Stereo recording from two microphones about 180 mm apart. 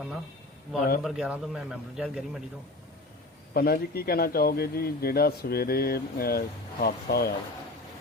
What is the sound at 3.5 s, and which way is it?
A man's voice, 60° left (ahead or behind).